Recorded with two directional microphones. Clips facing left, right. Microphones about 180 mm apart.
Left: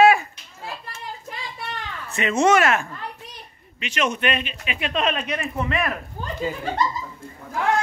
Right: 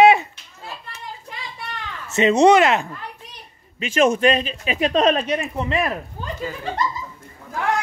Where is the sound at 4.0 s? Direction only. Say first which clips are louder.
Right 7 dB; 40° right (ahead or behind).